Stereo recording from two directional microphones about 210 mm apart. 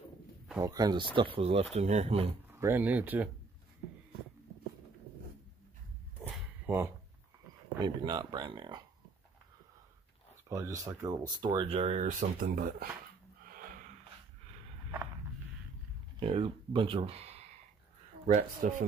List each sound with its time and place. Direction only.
0.7 s speech: 20° right (ahead or behind)
2.6 s speech: 10° right (ahead or behind)
6.2 s a sound: centre (ahead or behind)
7.8 s speech: 20° right (ahead or behind)
10.5 s speech: 15° right (ahead or behind); by 12.8 s 45° right (ahead or behind)
13.6 s snort: 40° right (ahead or behind)
16.2 s speech: 25° right (ahead or behind)
18.2 s speech: 40° right (ahead or behind)